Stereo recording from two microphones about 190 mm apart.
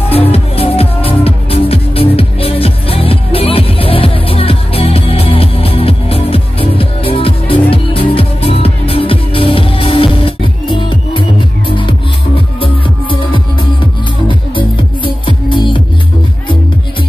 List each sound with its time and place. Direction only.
0.1 s music: 30° left (ahead or behind)
12.5 s music: 25° left (ahead or behind)